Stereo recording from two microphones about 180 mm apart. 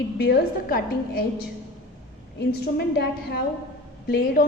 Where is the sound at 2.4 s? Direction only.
65° left (ahead or behind).